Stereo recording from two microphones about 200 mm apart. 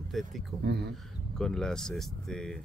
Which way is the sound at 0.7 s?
55° right (ahead or behind).